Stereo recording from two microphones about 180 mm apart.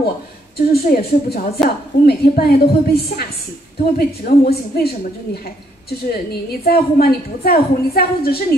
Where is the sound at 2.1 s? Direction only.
60° left (ahead or behind).